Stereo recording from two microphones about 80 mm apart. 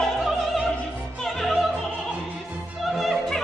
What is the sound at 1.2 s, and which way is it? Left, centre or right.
Opera, centre.